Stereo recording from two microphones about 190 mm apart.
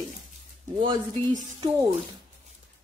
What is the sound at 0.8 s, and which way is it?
Speech, 25° right (ahead or behind).